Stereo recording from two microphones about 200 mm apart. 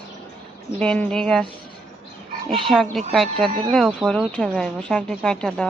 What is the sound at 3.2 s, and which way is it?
Speech, 30° right (ahead or behind).